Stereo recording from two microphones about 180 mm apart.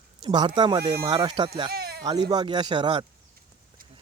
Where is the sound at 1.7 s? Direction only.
60° right (ahead or behind).